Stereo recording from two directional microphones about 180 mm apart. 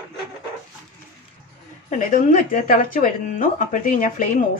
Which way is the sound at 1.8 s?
45° left (ahead or behind).